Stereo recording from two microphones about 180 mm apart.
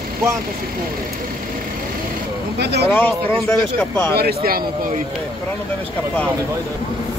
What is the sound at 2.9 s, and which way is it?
Speech, 10° left (ahead or behind).